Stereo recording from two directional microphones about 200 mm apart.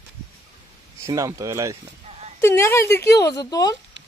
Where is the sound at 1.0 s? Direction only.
15° right (ahead or behind).